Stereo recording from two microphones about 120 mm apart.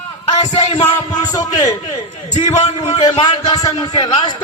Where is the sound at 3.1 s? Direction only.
45° left (ahead or behind).